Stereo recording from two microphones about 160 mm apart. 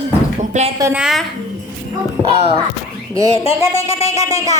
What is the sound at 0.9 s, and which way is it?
Speech, 5° right (ahead or behind).